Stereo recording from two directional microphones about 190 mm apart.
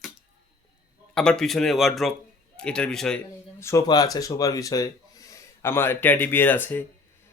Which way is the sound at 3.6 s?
15° left (ahead or behind).